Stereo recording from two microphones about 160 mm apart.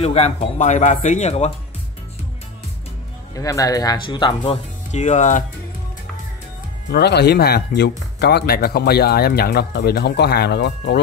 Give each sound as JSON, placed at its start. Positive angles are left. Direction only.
{"t": 0.0, "sound": "speech", "side_deg": 40}
{"t": 3.3, "sound": "speech", "side_deg": 20}
{"t": 4.9, "sound": "speech", "side_deg": 50}
{"t": 6.9, "sound": "speech", "side_deg": 90}